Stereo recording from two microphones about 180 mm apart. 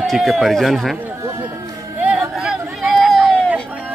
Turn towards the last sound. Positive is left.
turn(degrees=5)  # may be behind; listen again after turning